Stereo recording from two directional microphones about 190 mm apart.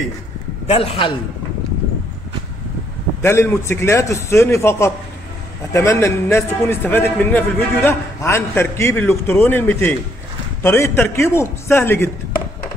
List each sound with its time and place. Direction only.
0.7 s a man's voice: 30° left (ahead or behind)
3.2 s a man's voice: 15° left (ahead or behind)